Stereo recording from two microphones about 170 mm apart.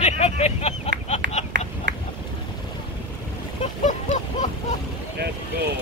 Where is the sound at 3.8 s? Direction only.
45° left (ahead or behind).